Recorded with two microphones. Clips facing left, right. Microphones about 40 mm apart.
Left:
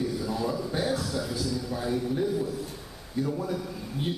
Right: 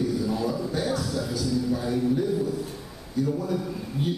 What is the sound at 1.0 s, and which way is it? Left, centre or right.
A man's voice, centre.